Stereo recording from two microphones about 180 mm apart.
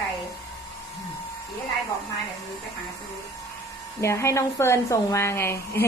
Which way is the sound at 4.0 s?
15° left (ahead or behind).